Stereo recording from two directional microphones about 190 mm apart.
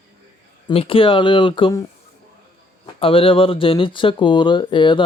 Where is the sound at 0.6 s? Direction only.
30° left (ahead or behind).